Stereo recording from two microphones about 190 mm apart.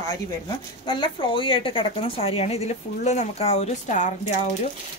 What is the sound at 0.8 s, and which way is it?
A woman's voice, 25° left (ahead or behind).